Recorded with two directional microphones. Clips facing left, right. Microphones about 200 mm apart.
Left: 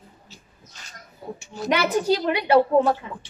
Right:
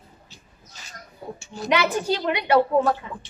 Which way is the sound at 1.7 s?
40° left (ahead or behind).